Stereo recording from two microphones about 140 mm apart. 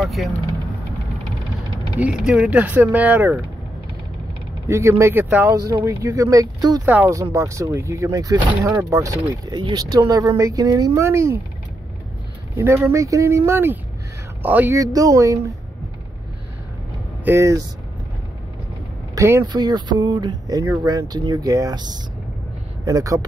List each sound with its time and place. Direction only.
0.0 s speech: centre (ahead or behind)
2.0 s speech: 10° right (ahead or behind)
4.6 s speech: 20° right (ahead or behind)
6.9 s speech: 10° right (ahead or behind)
12.5 s speech: 20° right (ahead or behind)
14.8 s speech: 25° right (ahead or behind)
17.2 s speech: 20° right (ahead or behind)
19.1 s speech: 20° right (ahead or behind)
19.4 s speech: 30° right (ahead or behind)